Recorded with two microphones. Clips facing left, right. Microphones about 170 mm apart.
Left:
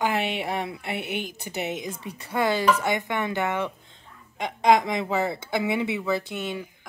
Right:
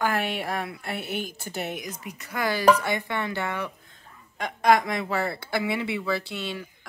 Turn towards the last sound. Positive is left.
turn(degrees=20)  # may be behind; listen again after turning